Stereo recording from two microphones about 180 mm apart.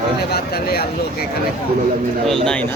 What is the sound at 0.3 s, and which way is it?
Speech, 60° left (ahead or behind).